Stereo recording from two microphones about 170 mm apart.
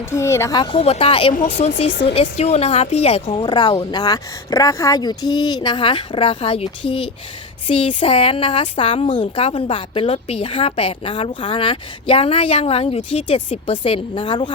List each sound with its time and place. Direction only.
0.1 s speech: 15° left (ahead or behind); by 1.7 s 35° left (ahead or behind)
1.9 s speech: 90° left
2.4 s speech: 35° left (ahead or behind)
3.3 s speech: 25° left (ahead or behind)